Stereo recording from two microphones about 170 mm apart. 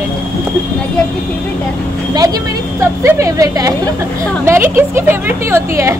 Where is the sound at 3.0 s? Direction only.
20° right (ahead or behind).